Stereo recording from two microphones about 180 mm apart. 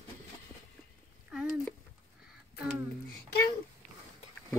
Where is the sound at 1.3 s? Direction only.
5° right (ahead or behind).